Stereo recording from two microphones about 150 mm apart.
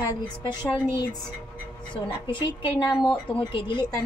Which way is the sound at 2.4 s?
30° left (ahead or behind).